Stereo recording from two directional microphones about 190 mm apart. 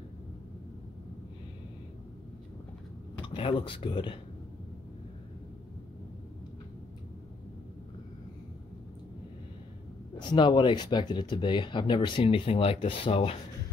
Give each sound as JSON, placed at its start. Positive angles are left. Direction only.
{"t": 3.2, "sound": "speech", "side_deg": 25}
{"t": 10.2, "sound": "speech", "side_deg": 25}